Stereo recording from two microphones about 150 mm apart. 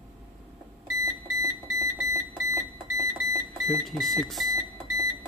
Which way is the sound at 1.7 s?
20° right (ahead or behind).